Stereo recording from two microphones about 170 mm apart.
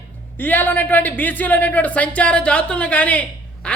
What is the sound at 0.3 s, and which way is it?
A woman's voice, 10° left (ahead or behind).